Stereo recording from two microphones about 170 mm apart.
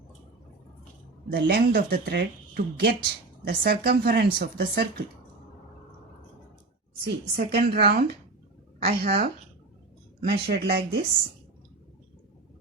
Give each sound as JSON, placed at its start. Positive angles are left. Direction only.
{"t": 1.3, "sound": "speech", "side_deg": -60}
{"t": 7.3, "sound": "speech", "side_deg": -65}
{"t": 10.2, "sound": "speech", "side_deg": -70}